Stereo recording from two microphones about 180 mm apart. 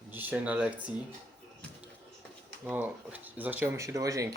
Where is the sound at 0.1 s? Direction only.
10° right (ahead or behind).